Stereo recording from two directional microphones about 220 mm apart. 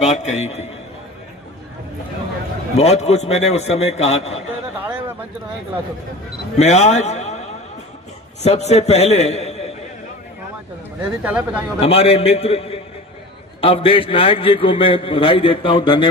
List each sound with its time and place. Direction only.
0.1 s a man's voice: 30° left (ahead or behind)
2.7 s a man's voice: 30° left (ahead or behind)
4.8 s a sound: 10° right (ahead or behind)
6.6 s a man's voice: 30° left (ahead or behind)
8.4 s a man's voice: 30° left (ahead or behind)
11.2 s speech: 5° right (ahead or behind)
11.8 s a man's voice: 25° left (ahead or behind)